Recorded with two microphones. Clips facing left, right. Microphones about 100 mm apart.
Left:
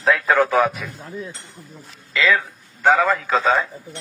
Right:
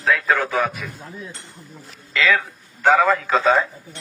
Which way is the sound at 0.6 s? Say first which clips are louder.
Left 4 dB; 10° left (ahead or behind).